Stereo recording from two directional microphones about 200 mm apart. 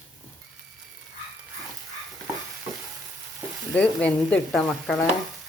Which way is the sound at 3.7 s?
5° left (ahead or behind).